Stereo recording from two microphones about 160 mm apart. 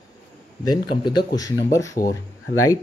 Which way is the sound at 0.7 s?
30° left (ahead or behind).